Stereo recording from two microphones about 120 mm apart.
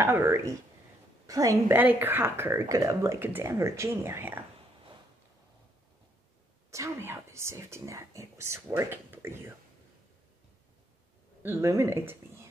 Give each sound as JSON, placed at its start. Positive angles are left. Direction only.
{"t": 0.0, "sound": "a woman's voice", "side_deg": -25}
{"t": 1.7, "sound": "speech", "side_deg": -15}
{"t": 6.7, "sound": "speech", "side_deg": -20}
{"t": 11.4, "sound": "speech", "side_deg": -20}